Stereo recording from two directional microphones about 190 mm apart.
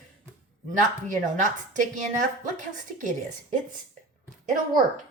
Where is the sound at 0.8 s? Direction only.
40° right (ahead or behind).